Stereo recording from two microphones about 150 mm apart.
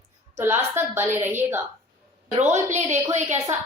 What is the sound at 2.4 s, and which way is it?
Speech, 50° right (ahead or behind).